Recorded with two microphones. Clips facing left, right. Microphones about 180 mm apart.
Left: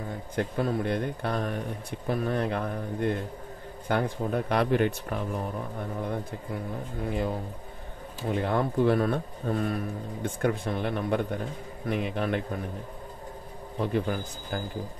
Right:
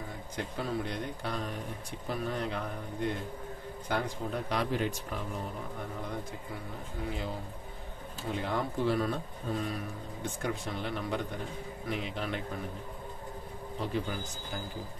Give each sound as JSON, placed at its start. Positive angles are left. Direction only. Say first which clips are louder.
{"t": 0.4, "sound": "speech", "louder": "left 7 dB", "side_deg": 55}
{"t": 7.1, "sound": "speech", "louder": "left 8 dB", "side_deg": 55}
{"t": 8.4, "sound": "speech", "louder": "left 7 dB", "side_deg": 55}
{"t": 13.7, "sound": "speech", "louder": "left 6 dB", "side_deg": 55}